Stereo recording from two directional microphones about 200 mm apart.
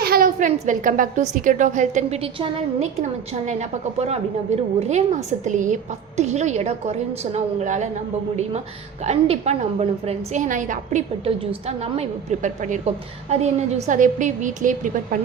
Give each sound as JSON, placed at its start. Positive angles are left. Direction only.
{"t": 0.0, "sound": "a woman's voice", "side_deg": -45}
{"t": 9.0, "sound": "a woman's voice", "side_deg": -30}